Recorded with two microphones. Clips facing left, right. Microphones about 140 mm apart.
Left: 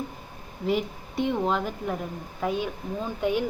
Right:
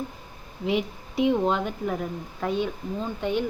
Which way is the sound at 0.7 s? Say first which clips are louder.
Even; centre (ahead or behind).